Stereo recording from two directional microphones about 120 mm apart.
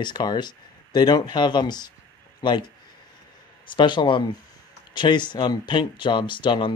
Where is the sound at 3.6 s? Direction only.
40° left (ahead or behind).